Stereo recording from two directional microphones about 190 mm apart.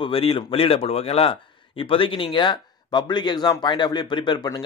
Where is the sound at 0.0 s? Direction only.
30° left (ahead or behind).